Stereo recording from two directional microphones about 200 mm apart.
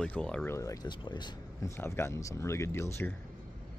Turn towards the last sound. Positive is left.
turn(degrees=10)  # may be behind; listen again after turning